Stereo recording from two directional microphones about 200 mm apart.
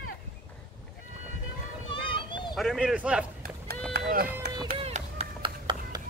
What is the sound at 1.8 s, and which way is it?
Children playing, 25° left (ahead or behind).